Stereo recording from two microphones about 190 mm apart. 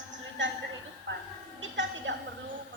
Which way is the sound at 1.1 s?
75° right (ahead or behind).